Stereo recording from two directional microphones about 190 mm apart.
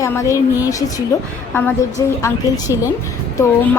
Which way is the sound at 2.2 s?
15° left (ahead or behind).